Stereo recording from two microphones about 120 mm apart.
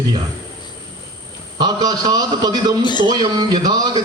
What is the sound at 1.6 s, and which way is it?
A man's voice, 35° right (ahead or behind).